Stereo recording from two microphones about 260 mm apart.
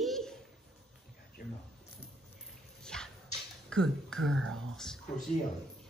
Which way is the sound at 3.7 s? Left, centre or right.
Centre.